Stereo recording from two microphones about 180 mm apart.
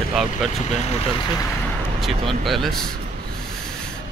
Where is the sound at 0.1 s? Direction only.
5° right (ahead or behind).